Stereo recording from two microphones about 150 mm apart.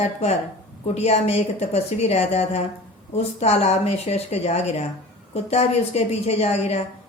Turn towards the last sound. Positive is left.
turn(degrees=45)  # may be behind; listen again after turning